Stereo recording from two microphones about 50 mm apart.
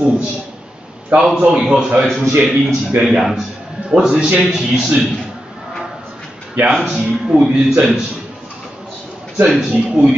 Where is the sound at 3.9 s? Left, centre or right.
Centre.